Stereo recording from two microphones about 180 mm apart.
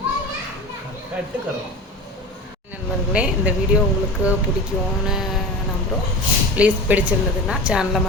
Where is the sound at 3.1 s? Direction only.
5° right (ahead or behind).